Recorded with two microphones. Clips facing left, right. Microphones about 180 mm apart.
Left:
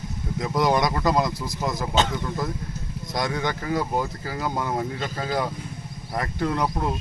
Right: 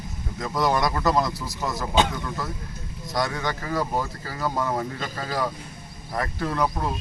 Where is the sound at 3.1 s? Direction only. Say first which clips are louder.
Even; 20° left (ahead or behind).